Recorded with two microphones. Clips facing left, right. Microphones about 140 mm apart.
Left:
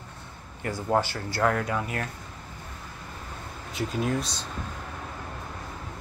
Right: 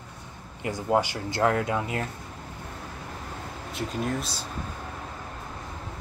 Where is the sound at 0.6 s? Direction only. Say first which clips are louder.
Right 1 dB; 15° right (ahead or behind).